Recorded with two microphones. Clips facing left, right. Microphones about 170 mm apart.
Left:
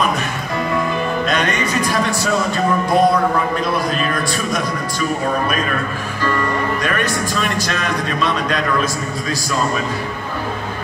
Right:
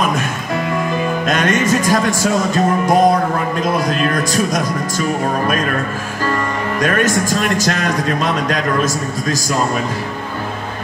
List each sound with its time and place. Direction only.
1.2 s speech: 45° right (ahead or behind)
6.8 s speech: 45° right (ahead or behind)